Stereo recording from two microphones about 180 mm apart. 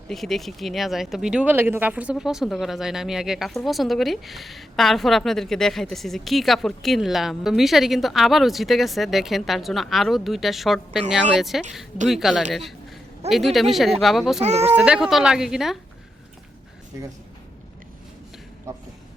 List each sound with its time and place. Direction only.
0.1 s speech: centre (ahead or behind)
14.4 s speech: 35° right (ahead or behind)
14.7 s speech: 5° right (ahead or behind)